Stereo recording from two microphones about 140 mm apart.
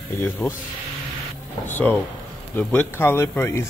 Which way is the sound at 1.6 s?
15° left (ahead or behind).